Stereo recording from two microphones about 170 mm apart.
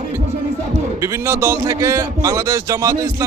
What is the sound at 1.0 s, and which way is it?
Speech, 15° right (ahead or behind).